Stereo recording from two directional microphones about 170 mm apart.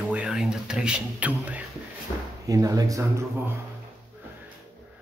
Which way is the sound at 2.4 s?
20° right (ahead or behind).